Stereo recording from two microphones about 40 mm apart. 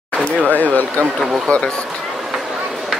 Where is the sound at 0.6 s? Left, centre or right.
Left.